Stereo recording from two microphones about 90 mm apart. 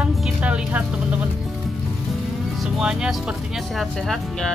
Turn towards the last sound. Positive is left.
turn(degrees=5)  # may be behind; listen again after turning